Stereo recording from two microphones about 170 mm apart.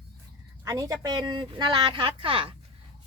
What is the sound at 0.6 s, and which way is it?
Speech, 20° right (ahead or behind).